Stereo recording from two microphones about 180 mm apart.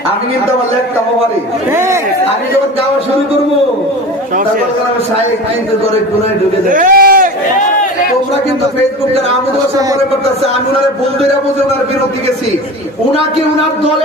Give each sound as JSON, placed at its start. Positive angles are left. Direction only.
{"t": 1.7, "sound": "speech", "side_deg": -15}
{"t": 6.7, "sound": "a man's voice", "side_deg": -50}